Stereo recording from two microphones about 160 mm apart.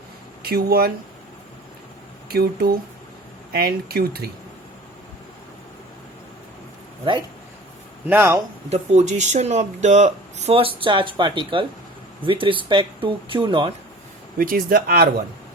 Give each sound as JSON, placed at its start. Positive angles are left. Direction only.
{"t": 0.4, "sound": "speech", "side_deg": -75}
{"t": 2.3, "sound": "speech", "side_deg": -75}
{"t": 7.0, "sound": "speech", "side_deg": -30}
{"t": 8.0, "sound": "a man's voice", "side_deg": -15}
{"t": 8.7, "sound": "speech", "side_deg": -45}
{"t": 14.3, "sound": "speech", "side_deg": -65}